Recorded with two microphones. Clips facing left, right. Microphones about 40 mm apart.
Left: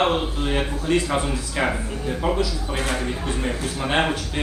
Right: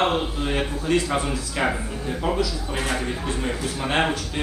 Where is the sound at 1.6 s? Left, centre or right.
Centre.